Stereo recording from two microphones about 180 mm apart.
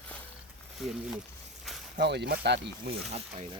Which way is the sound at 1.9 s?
70° right (ahead or behind).